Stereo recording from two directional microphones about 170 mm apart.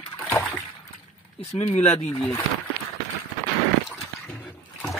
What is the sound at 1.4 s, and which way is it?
Speech, 40° left (ahead or behind).